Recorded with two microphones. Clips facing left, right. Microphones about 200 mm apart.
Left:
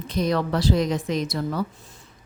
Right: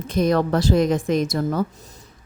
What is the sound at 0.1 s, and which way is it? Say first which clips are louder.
Speech: right 4 dB; 50° right (ahead or behind).